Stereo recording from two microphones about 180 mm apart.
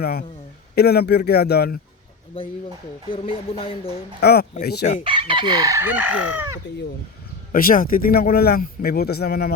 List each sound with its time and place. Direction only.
0.0 s speech: 60° left (ahead or behind)
3.5 s speech: 30° left (ahead or behind)
4.2 s speech: 60° left (ahead or behind)
5.0 s chicken: 30° right (ahead or behind); by 6.6 s 10° right (ahead or behind)
7.5 s speech: 50° left (ahead or behind)